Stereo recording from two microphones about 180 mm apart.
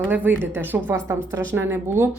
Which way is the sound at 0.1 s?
10° right (ahead or behind).